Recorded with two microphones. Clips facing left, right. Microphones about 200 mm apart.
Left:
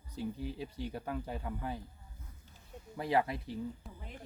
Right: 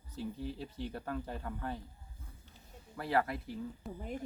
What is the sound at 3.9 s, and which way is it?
Speech, 45° right (ahead or behind).